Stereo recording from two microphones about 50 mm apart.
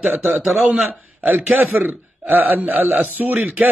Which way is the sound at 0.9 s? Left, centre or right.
Right.